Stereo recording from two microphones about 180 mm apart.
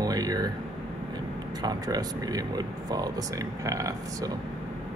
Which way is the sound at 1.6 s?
20° right (ahead or behind).